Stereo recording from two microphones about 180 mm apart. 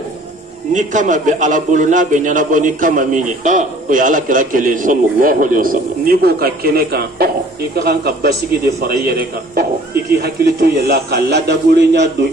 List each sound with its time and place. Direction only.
0.7 s a man's voice: 45° right (ahead or behind); by 12.3 s 70° right (ahead or behind)